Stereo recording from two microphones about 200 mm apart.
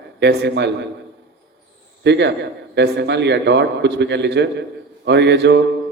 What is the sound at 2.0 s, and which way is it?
A man's voice, 60° right (ahead or behind).